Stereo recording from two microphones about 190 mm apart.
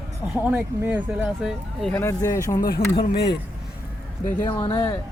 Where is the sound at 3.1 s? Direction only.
60° left (ahead or behind).